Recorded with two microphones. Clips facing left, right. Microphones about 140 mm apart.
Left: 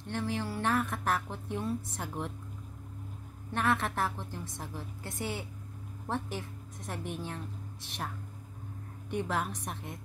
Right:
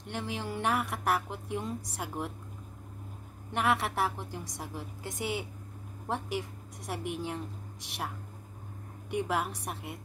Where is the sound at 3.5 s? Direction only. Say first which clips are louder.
Right 1 dB; 15° right (ahead or behind).